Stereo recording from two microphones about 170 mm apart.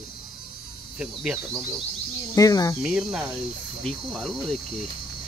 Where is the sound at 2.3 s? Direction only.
20° left (ahead or behind).